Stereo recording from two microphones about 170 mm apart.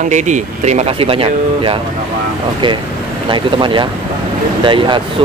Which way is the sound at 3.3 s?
30° right (ahead or behind).